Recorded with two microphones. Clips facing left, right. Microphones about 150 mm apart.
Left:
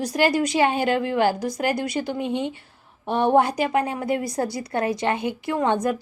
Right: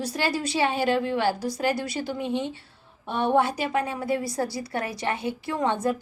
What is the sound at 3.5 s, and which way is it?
A woman's voice, 15° left (ahead or behind).